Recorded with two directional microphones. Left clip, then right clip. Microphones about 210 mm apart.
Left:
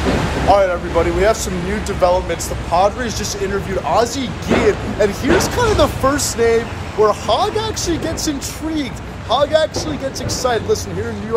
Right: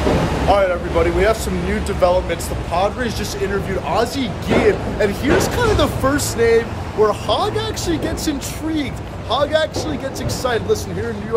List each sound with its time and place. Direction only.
0.5 s speech: 10° right (ahead or behind)